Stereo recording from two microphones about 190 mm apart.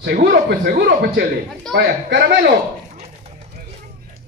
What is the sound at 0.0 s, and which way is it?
A man's voice, 50° right (ahead or behind).